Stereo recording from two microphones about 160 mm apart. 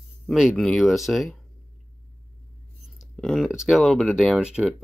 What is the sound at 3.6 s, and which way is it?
Speech, centre (ahead or behind).